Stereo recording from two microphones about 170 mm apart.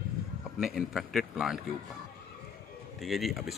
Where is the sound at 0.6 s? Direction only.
Centre (ahead or behind).